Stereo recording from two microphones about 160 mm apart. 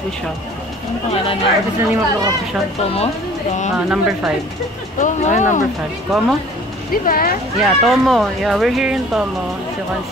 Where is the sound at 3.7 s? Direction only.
5° right (ahead or behind).